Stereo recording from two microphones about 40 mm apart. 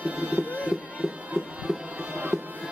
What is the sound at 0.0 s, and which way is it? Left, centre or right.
Music, right.